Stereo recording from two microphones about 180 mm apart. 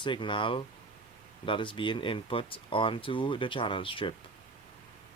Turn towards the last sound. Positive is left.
turn(degrees=30)  # may be behind; listen again after turning